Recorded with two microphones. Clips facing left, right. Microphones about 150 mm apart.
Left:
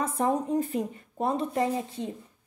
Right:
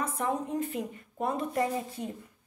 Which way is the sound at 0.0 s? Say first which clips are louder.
Left 4 dB; 35° left (ahead or behind).